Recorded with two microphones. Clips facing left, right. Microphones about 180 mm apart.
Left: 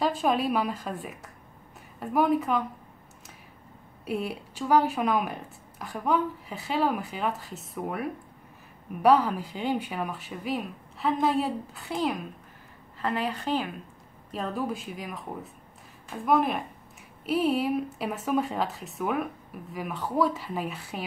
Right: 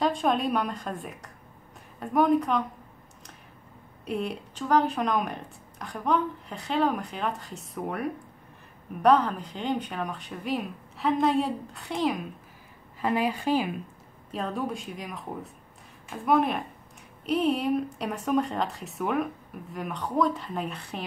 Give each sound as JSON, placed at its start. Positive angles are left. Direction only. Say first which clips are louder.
{"t": 0.0, "sound": "speech", "louder": "even", "side_deg": 5}
{"t": 4.0, "sound": "speech", "louder": "even", "side_deg": 5}
{"t": 13.0, "sound": "a woman's voice", "louder": "right 3 dB", "side_deg": -10}
{"t": 14.3, "sound": "speech", "louder": "even", "side_deg": 0}